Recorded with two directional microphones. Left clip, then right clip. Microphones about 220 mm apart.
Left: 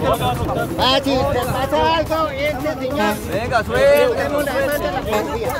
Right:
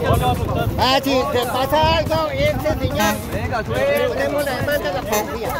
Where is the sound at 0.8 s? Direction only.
35° right (ahead or behind); by 2.5 s 50° right (ahead or behind).